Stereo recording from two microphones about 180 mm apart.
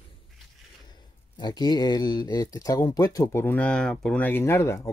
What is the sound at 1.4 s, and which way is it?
Speech, 20° left (ahead or behind).